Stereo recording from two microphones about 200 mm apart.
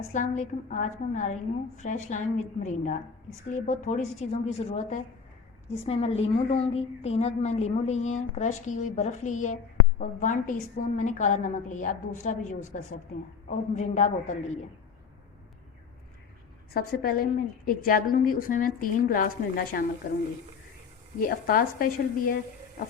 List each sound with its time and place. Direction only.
0.1 s a woman's voice: 40° left (ahead or behind)
16.7 s a woman's voice: 45° left (ahead or behind)
21.2 s a woman's voice: 45° left (ahead or behind)